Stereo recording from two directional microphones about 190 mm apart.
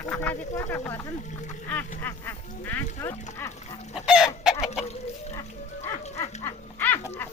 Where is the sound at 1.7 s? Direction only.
10° left (ahead or behind).